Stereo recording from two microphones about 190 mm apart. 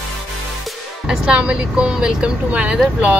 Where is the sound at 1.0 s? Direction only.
5° right (ahead or behind).